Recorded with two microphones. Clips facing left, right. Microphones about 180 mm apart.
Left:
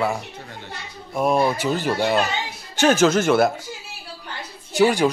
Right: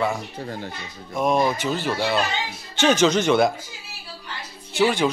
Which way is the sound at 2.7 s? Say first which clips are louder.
Left 2 dB; 5° left (ahead or behind).